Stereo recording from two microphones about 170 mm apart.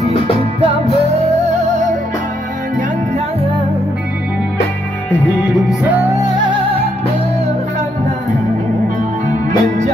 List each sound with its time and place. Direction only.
0.0 s music: 40° right (ahead or behind)
5.2 s music: centre (ahead or behind); by 6.5 s 20° right (ahead or behind)
9.3 s music: 45° right (ahead or behind)